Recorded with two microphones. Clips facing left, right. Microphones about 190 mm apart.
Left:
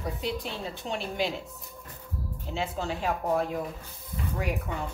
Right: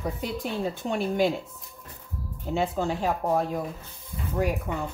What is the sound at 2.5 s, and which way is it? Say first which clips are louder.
Speech: right 6 dB; 50° right (ahead or behind).